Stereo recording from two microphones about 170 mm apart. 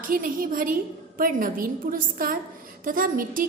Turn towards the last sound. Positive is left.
turn(degrees=-55)  # may be behind; listen again after turning